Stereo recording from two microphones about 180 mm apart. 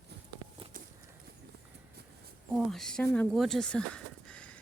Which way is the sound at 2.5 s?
Centre (ahead or behind).